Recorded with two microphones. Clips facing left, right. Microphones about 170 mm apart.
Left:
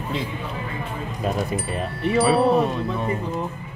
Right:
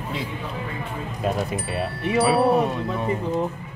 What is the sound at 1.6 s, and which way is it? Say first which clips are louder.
Speech: left 1 dB; 5° right (ahead or behind).